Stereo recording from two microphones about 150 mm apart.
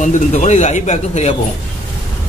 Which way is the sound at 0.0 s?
50° left (ahead or behind).